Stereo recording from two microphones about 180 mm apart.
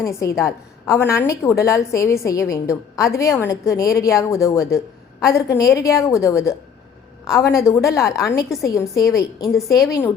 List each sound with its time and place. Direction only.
0.0 s a woman's voice: 15° left (ahead or behind)